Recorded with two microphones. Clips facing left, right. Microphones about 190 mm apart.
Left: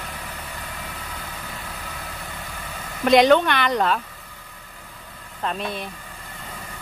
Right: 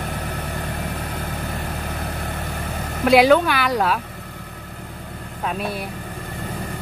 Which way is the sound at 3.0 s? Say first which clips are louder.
Right 1 dB; 5° right (ahead or behind).